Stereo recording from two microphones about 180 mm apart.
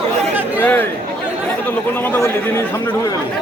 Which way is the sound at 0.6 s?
10° left (ahead or behind).